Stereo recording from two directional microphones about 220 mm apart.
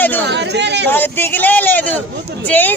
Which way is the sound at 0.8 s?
10° left (ahead or behind).